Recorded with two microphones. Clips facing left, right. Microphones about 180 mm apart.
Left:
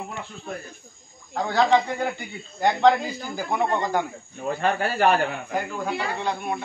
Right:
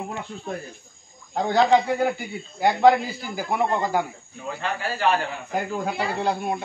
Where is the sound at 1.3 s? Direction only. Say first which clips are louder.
Right 3 dB; 20° right (ahead or behind).